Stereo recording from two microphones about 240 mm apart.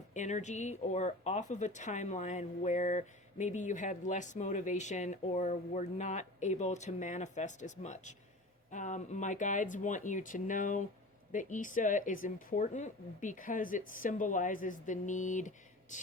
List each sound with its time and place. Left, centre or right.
0.1 s speech: left